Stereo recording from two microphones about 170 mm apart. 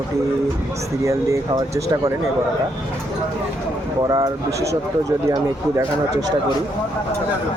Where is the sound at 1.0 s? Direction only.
20° right (ahead or behind).